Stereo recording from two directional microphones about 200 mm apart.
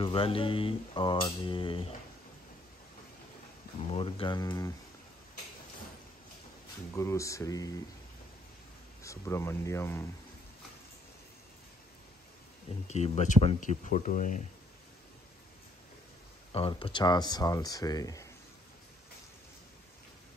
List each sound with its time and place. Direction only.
0.0 s speech: 25° left (ahead or behind)
3.9 s speech: 25° left (ahead or behind)
7.0 s speech: 15° left (ahead or behind)
9.0 s speech: 15° left (ahead or behind)
12.8 s speech: 35° left (ahead or behind)
16.5 s speech: 25° left (ahead or behind)